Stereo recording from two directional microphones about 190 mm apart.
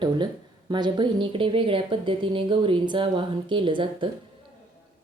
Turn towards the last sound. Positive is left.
turn(degrees=-25)  # may be behind; listen again after turning